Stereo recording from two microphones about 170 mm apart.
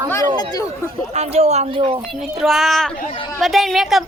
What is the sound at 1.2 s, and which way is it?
Speech, 40° right (ahead or behind).